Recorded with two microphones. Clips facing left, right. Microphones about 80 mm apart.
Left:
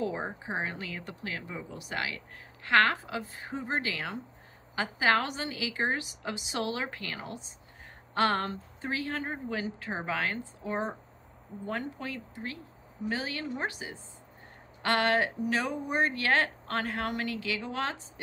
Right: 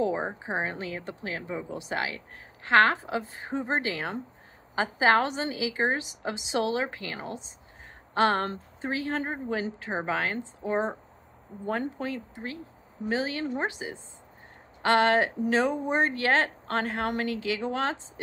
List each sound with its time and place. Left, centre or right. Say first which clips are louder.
0.0 s speech: right 5 dB; right